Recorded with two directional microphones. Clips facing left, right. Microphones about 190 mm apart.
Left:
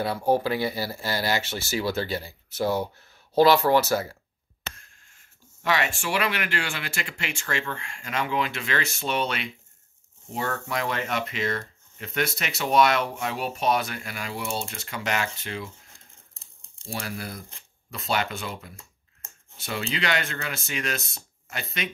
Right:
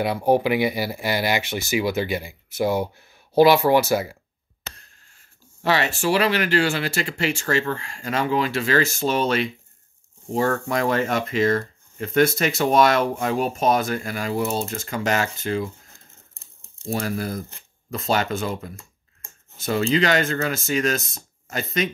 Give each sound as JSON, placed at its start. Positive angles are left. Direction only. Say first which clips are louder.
{"t": 0.0, "sound": "speech", "louder": "right 4 dB", "side_deg": -15}
{"t": 4.7, "sound": "speech", "louder": "right 1 dB", "side_deg": -35}
{"t": 16.8, "sound": "speech", "louder": "right 8 dB", "side_deg": -45}